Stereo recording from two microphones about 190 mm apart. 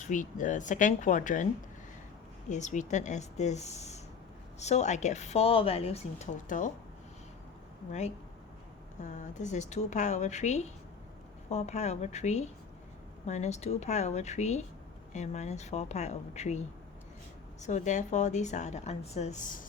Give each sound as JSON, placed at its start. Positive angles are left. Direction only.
{"t": 0.0, "sound": "a woman's voice", "side_deg": 40}
{"t": 2.5, "sound": "a woman's voice", "side_deg": 40}
{"t": 9.0, "sound": "a woman's voice", "side_deg": 40}